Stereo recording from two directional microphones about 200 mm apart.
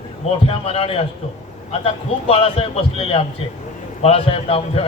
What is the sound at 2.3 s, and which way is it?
A man's voice, 30° left (ahead or behind).